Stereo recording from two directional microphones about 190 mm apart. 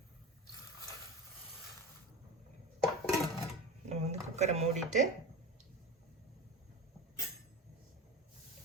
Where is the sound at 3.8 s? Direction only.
35° right (ahead or behind).